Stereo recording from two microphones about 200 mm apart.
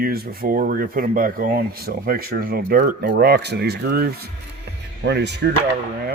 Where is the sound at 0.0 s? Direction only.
50° right (ahead or behind).